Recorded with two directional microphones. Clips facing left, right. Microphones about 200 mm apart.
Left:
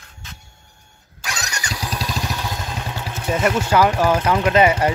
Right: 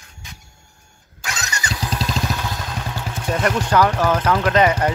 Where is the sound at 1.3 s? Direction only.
15° left (ahead or behind).